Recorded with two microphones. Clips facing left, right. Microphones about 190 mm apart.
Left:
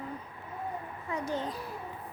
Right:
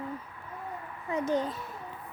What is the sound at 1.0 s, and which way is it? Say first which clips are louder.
Speech: right 6 dB; 20° right (ahead or behind).